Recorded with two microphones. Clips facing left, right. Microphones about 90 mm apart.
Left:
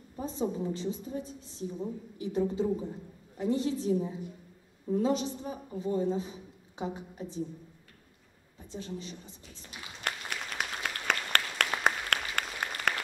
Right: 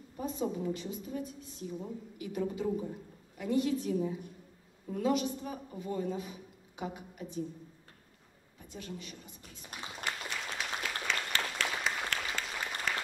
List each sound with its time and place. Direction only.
0.2 s a woman's voice: 30° left (ahead or behind)
8.7 s a woman's voice: 30° left (ahead or behind)
10.0 s applause: 60° left (ahead or behind)